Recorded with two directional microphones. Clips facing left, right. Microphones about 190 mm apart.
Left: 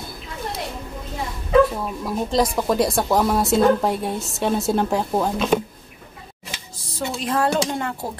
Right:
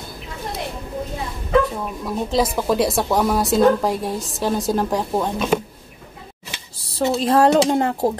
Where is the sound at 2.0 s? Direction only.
Centre (ahead or behind).